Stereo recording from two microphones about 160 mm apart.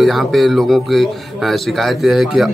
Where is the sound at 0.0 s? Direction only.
Centre (ahead or behind).